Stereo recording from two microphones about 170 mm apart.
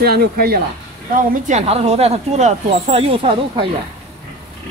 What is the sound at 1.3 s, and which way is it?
Speech, 45° right (ahead or behind).